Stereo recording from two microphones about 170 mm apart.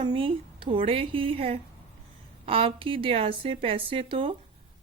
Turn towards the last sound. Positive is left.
turn(degrees=-30)  # may be behind; listen again after turning